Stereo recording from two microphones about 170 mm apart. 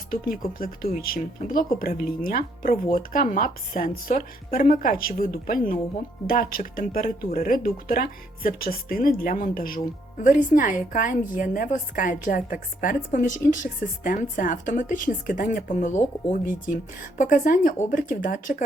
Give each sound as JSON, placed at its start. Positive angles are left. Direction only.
{"t": 0.1, "sound": "a woman's voice", "side_deg": 55}